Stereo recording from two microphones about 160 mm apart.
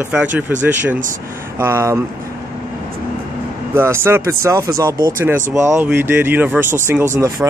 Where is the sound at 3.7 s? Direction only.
15° right (ahead or behind).